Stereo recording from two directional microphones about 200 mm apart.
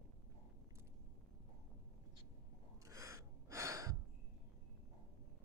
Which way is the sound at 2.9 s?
15° right (ahead or behind).